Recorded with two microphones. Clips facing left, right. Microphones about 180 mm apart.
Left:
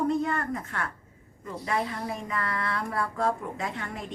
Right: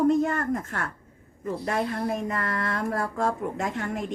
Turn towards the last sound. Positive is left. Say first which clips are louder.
# right 5 dB
turn(degrees=-45)  # may be behind; listen again after turning